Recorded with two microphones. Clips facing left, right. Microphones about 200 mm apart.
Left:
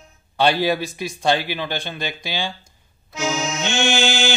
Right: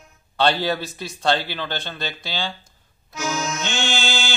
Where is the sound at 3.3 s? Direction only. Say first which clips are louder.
Left 2 dB; 25° left (ahead or behind).